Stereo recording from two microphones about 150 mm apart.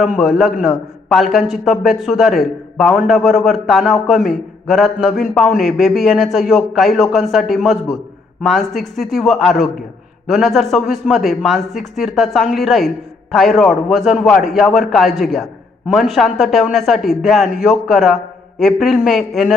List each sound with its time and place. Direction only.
0.0 s a man's voice: centre (ahead or behind)